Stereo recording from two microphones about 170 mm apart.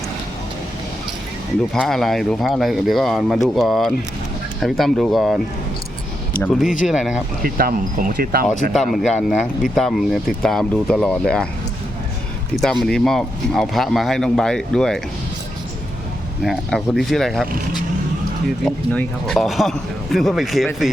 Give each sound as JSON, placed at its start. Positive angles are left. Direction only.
{"t": 1.7, "sound": "speech", "side_deg": 0}
{"t": 6.4, "sound": "speech", "side_deg": 0}
{"t": 7.4, "sound": "speech", "side_deg": -55}
{"t": 8.7, "sound": "speech", "side_deg": 0}
{"t": 12.8, "sound": "speech", "side_deg": 0}
{"t": 16.4, "sound": "speech", "side_deg": 0}
{"t": 18.6, "sound": "speech", "side_deg": 5}